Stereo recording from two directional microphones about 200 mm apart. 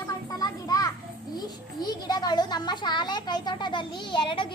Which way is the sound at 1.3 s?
20° left (ahead or behind).